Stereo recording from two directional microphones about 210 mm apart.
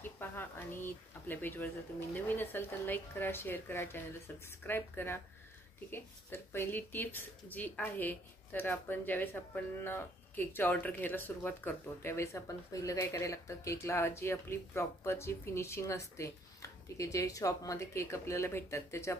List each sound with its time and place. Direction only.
0.2 s speech: 10° left (ahead or behind)